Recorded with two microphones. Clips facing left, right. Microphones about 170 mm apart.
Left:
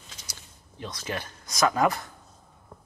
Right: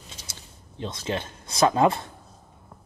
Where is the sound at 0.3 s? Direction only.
25° right (ahead or behind).